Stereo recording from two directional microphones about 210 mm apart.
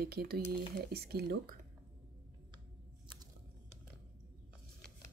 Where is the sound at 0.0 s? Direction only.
50° right (ahead or behind).